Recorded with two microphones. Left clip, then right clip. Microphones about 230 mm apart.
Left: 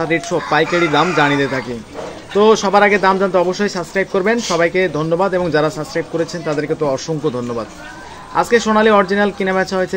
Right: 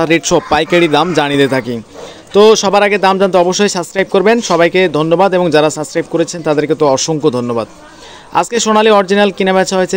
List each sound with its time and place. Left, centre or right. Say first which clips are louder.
0.0 s speech: right 6 dB; right